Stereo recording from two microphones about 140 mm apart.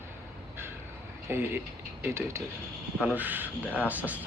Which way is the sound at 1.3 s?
15° right (ahead or behind).